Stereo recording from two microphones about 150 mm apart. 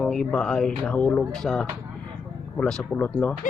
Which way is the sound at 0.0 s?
5° left (ahead or behind).